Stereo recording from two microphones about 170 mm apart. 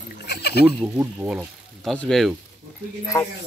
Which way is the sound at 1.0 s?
10° right (ahead or behind).